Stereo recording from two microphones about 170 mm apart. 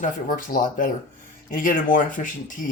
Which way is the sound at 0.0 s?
50° left (ahead or behind).